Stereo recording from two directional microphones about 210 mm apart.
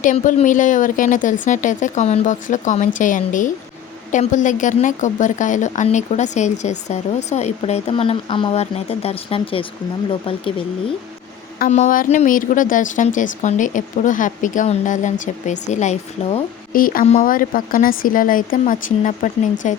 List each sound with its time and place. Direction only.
0.0 s a woman's voice: 40° left (ahead or behind)
11.6 s a woman's voice: 35° left (ahead or behind)